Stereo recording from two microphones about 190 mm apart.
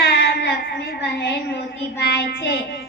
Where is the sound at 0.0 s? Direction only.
60° left (ahead or behind).